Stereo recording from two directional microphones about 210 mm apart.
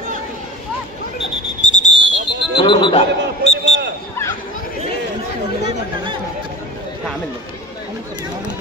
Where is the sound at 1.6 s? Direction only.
35° left (ahead or behind).